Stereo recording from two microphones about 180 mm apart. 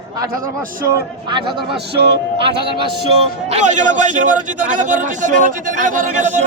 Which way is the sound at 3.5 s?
40° right (ahead or behind).